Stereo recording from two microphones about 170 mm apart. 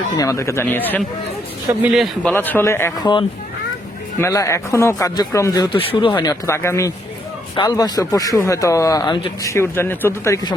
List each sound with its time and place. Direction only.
0.2 s speech: 20° left (ahead or behind)
1.8 s a man's voice: centre (ahead or behind)
2.3 s speech: 10° left (ahead or behind)
4.2 s speech: 15° left (ahead or behind)
9.5 s speech: 15° left (ahead or behind)